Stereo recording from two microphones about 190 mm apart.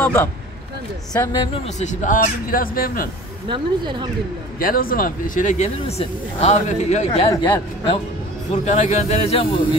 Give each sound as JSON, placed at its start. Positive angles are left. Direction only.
{"t": 0.0, "sound": "speech", "side_deg": 10}
{"t": 3.4, "sound": "a woman's voice", "side_deg": -25}
{"t": 4.6, "sound": "speech", "side_deg": 50}
{"t": 7.1, "sound": "speech", "side_deg": 25}
{"t": 8.5, "sound": "speech", "side_deg": 40}